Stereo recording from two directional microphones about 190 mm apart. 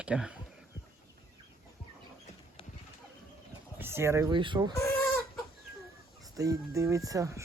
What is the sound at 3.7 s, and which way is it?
Speech, 10° right (ahead or behind).